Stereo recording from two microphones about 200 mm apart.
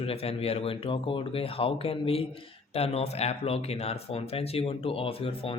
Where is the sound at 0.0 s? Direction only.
30° left (ahead or behind).